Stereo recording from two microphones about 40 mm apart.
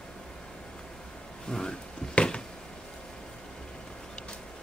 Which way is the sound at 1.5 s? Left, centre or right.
Centre.